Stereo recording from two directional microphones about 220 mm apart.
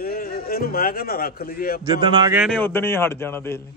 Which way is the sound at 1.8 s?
20° right (ahead or behind).